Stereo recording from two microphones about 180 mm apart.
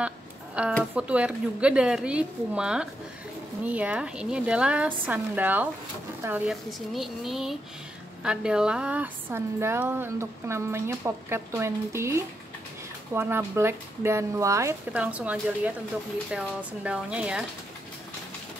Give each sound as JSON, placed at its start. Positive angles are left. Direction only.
{"t": 0.6, "sound": "a woman's voice", "side_deg": -5}